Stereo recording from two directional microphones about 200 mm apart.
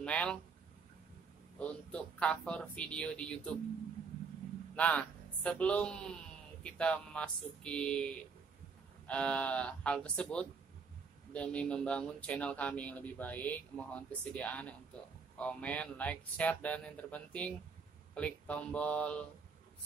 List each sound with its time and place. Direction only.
0.0 s speech: 5° left (ahead or behind)
1.6 s speech: 5° left (ahead or behind)
4.7 s a man's voice: 5° left (ahead or behind)